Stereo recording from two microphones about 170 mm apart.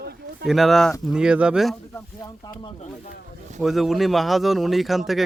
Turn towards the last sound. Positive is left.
turn(degrees=0)  # may be behind; listen again after turning